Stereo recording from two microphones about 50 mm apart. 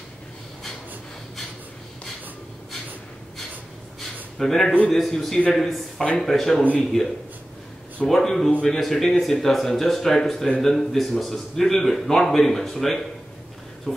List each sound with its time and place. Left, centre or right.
4.4 s a man's voice: centre
8.1 s a man's voice: centre